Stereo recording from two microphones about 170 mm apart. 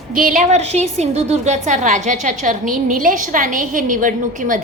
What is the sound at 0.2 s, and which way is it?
A woman's voice, 50° right (ahead or behind).